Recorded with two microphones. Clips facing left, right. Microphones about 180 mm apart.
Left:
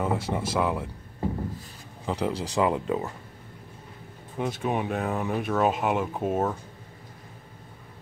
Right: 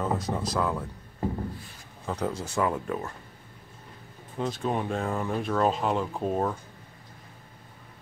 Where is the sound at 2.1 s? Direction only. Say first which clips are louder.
Left 2 dB; 15° left (ahead or behind).